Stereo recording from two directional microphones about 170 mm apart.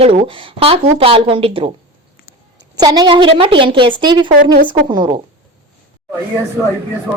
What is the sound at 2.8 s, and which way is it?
A woman's voice, 25° right (ahead or behind).